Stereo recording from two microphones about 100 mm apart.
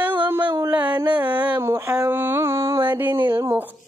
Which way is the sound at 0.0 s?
15° right (ahead or behind).